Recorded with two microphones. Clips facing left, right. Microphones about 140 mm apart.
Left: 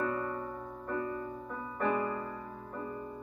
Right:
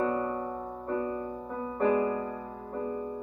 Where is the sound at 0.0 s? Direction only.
25° right (ahead or behind).